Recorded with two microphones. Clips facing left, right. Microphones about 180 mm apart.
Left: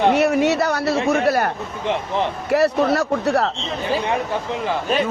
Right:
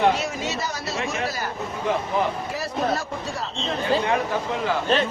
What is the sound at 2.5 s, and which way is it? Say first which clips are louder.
Speech: left 9 dB; 70° left (ahead or behind).